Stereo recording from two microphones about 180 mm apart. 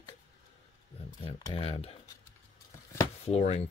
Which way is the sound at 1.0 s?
35° left (ahead or behind).